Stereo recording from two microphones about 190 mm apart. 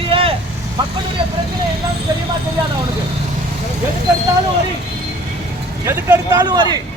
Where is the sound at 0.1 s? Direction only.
30° right (ahead or behind).